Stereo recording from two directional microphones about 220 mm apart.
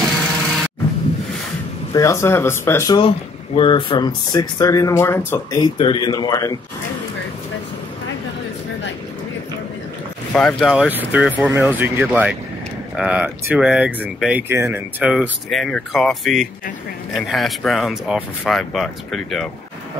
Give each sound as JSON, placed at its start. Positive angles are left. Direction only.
{"t": 2.0, "sound": "speech", "side_deg": 15}
{"t": 10.3, "sound": "speech", "side_deg": 0}